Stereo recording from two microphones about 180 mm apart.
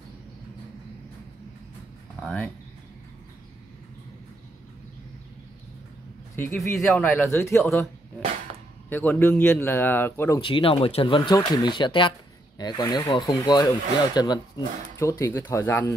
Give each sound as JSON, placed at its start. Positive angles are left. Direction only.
{"t": 2.2, "sound": "speech", "side_deg": 5}
{"t": 6.3, "sound": "speech", "side_deg": 10}
{"t": 8.8, "sound": "speech", "side_deg": 10}
{"t": 10.4, "sound": "speech", "side_deg": 30}